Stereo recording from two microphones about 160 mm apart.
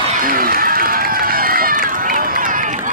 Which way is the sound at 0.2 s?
60° right (ahead or behind).